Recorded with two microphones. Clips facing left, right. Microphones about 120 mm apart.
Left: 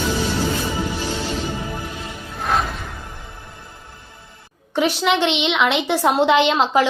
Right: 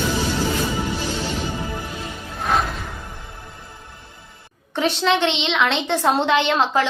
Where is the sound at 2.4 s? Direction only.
Centre (ahead or behind).